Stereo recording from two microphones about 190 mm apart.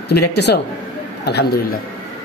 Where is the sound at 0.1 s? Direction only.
60° left (ahead or behind).